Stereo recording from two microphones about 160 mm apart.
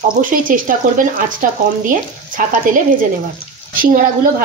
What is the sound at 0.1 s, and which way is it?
Speech, 55° right (ahead or behind).